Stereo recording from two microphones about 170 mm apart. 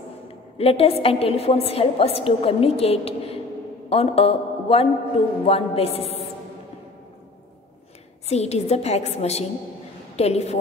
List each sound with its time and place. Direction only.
0.6 s a woman's voice: 35° left (ahead or behind)
8.3 s a woman's voice: 40° left (ahead or behind)